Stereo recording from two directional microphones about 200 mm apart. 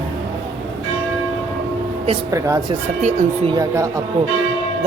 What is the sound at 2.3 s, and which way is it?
Speech, 15° right (ahead or behind).